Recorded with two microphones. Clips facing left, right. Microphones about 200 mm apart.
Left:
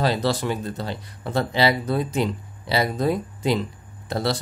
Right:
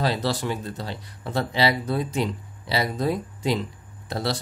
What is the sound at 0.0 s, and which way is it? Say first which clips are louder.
Speech: left 3 dB; 45° left (ahead or behind).